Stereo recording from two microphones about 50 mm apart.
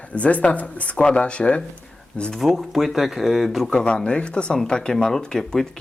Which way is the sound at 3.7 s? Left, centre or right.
Centre.